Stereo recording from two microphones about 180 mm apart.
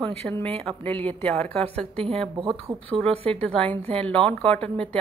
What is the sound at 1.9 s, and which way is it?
Speech, 30° right (ahead or behind).